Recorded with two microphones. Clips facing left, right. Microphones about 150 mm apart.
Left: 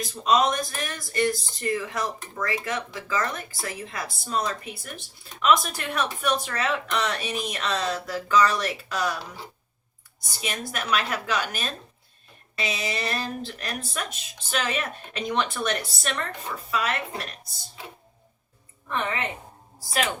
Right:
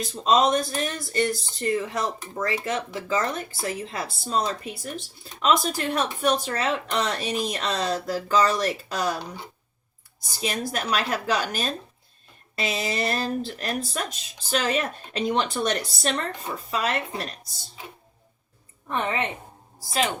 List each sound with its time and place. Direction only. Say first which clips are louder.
0.0 s speech: right 1 dB; 30° right (ahead or behind)
10.4 s speech: right 4 dB; 35° right (ahead or behind)
18.9 s speech: right 2 dB; 25° right (ahead or behind)